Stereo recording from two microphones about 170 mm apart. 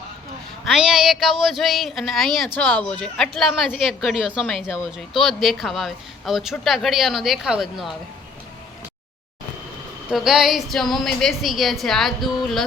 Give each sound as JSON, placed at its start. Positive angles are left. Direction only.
{"t": 0.6, "sound": "speech", "side_deg": 0}
{"t": 10.1, "sound": "speech", "side_deg": -5}